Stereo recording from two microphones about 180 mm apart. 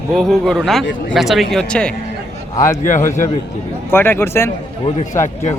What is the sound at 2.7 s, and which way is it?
Speech, 45° left (ahead or behind).